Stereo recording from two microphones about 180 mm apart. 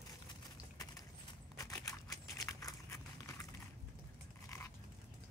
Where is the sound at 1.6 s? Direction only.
20° left (ahead or behind).